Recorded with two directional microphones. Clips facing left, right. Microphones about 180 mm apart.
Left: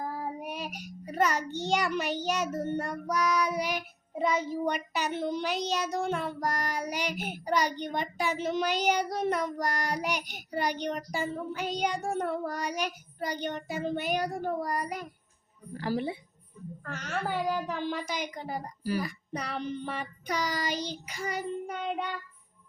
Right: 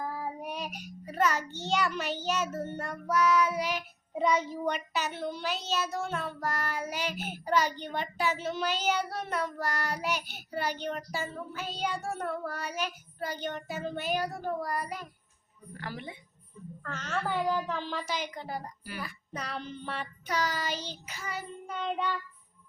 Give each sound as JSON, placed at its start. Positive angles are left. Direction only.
{"t": 0.3, "sound": "a child's voice", "side_deg": 10}
{"t": 3.1, "sound": "child singing", "side_deg": 15}
{"t": 15.7, "sound": "a woman's voice", "side_deg": 35}
{"t": 16.8, "sound": "child singing", "side_deg": 10}
{"t": 18.8, "sound": "a child's voice", "side_deg": 40}
{"t": 19.0, "sound": "child singing", "side_deg": 15}